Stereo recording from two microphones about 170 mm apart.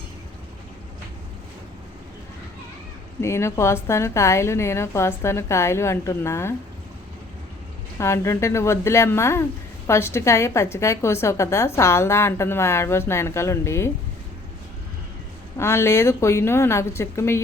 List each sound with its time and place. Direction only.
3.2 s speech: 15° left (ahead or behind)
7.9 s speech: 15° left (ahead or behind)
15.5 s speech: 15° left (ahead or behind)